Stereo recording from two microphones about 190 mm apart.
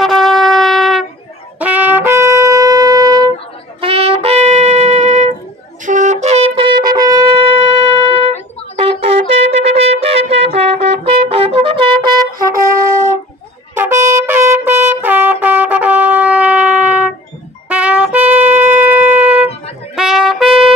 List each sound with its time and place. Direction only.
0.0 s shofar: centre (ahead or behind)
1.6 s wind instrument: 10° right (ahead or behind)
3.8 s music: 30° right (ahead or behind)
5.9 s shofar: 40° right (ahead or behind)
8.7 s wind instrument: 30° right (ahead or behind)
13.7 s brass instrument: 10° right (ahead or behind)
17.6 s wind instrument: 5° right (ahead or behind)
20.0 s trumpet: centre (ahead or behind)